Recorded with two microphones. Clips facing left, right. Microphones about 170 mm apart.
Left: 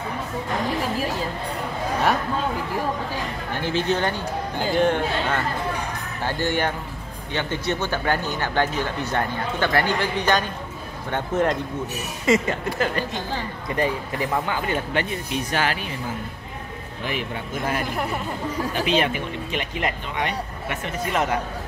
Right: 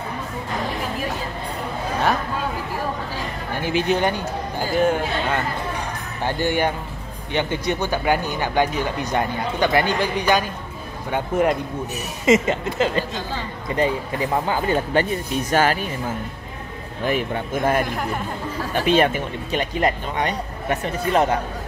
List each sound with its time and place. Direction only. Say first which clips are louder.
3.6 s a man's voice: right 3 dB; 15° right (ahead or behind)
12.3 s speech: right 3 dB; 20° right (ahead or behind)
14.4 s speech: right 4 dB; 35° right (ahead or behind)
18.9 s speech: right 7 dB; 45° right (ahead or behind)